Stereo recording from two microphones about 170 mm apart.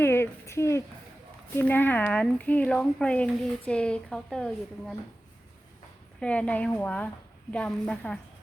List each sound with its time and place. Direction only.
0.0 s a sound: 15° left (ahead or behind)
1.5 s a woman's voice: 10° left (ahead or behind)
6.1 s speech: 5° left (ahead or behind)